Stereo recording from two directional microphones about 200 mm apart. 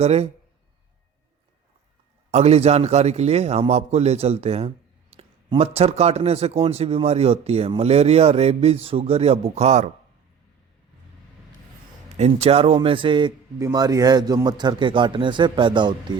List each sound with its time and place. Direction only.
0.0 s speech: 30° right (ahead or behind)
2.3 s speech: 30° right (ahead or behind)
12.1 s a man's voice: 30° right (ahead or behind)